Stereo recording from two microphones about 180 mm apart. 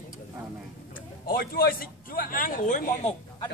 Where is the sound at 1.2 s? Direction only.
55° left (ahead or behind).